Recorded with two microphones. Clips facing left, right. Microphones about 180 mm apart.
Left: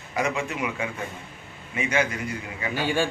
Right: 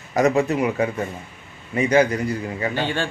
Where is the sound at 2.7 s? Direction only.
10° left (ahead or behind).